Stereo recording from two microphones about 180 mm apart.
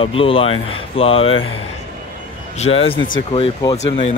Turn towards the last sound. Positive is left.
turn(degrees=35)  # may be behind; listen again after turning